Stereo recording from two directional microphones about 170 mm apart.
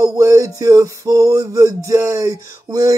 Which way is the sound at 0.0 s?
20° right (ahead or behind).